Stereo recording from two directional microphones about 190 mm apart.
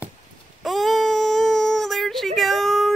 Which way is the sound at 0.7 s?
Centre (ahead or behind).